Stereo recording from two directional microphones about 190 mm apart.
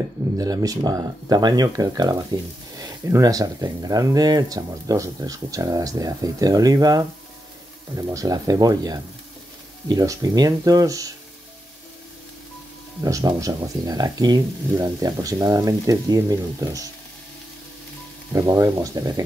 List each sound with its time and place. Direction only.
0.4 s speech: 20° right (ahead or behind)
13.0 s speech: 20° right (ahead or behind)
18.3 s speech: 15° right (ahead or behind)